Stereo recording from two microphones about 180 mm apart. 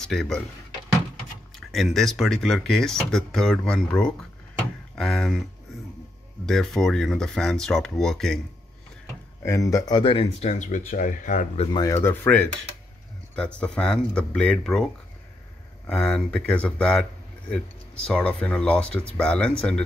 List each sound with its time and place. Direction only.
0.0 s speech: centre (ahead or behind)
1.7 s speech: centre (ahead or behind)
4.6 s a sound: 5° left (ahead or behind)
6.4 s speech: centre (ahead or behind)
9.4 s speech: 15° left (ahead or behind); by 11.8 s 35° left (ahead or behind)
11.8 s speech: 15° left (ahead or behind)
15.9 s speech: 5° left (ahead or behind)
18.0 s speech: 5° left (ahead or behind)